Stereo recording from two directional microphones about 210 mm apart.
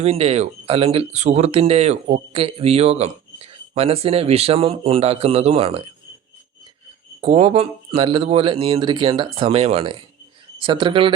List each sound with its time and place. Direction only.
0.0 s speech: 30° right (ahead or behind)
7.2 s speech: 30° right (ahead or behind)